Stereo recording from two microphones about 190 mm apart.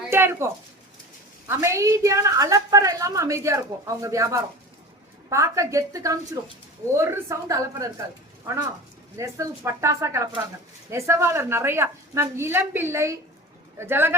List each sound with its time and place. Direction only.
0.0 s a sound: 10° right (ahead or behind)
1.5 s a woman's voice: 15° right (ahead or behind)
9.1 s a woman's voice: 15° right (ahead or behind)